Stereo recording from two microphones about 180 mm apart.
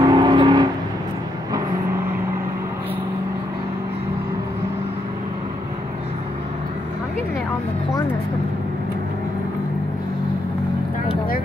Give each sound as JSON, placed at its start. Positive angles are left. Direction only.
{"t": 0.0, "sound": "vehicle", "side_deg": -25}